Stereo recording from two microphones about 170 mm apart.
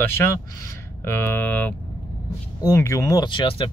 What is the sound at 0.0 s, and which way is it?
Speech, 15° left (ahead or behind).